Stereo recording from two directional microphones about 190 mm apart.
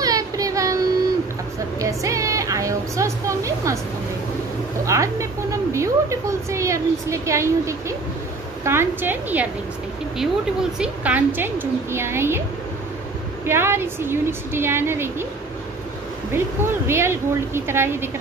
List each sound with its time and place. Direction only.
0.0 s child singing: 20° right (ahead or behind)
1.8 s a woman's voice: 15° right (ahead or behind)
4.8 s a woman's voice: 15° right (ahead or behind)
13.5 s a woman's voice: 10° right (ahead or behind)
16.3 s a woman's voice: 15° right (ahead or behind)